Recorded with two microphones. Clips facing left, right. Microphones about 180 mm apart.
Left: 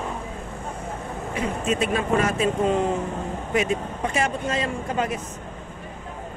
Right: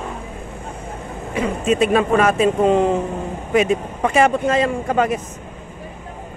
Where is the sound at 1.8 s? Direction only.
90° right.